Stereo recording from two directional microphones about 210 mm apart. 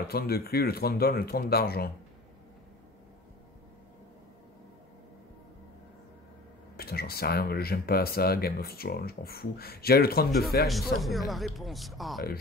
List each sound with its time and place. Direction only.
0.1 s speech: 45° left (ahead or behind)
6.8 s speech: 45° left (ahead or behind)
10.7 s speech: centre (ahead or behind)